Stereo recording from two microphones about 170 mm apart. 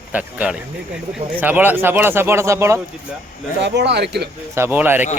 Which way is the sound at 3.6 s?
90° right.